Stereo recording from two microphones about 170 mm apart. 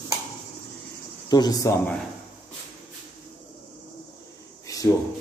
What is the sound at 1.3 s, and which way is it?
Speech, 25° left (ahead or behind).